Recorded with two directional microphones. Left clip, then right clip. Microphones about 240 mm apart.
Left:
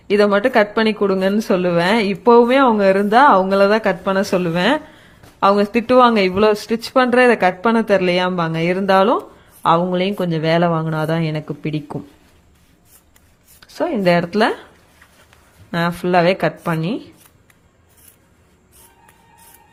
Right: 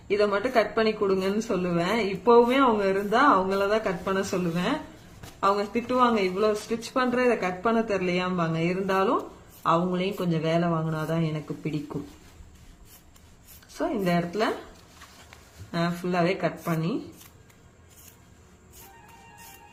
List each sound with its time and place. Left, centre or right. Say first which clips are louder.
0.1 s a woman's voice: left 10 dB; left
13.7 s a woman's voice: left 11 dB; left
15.7 s a woman's voice: left 11 dB; left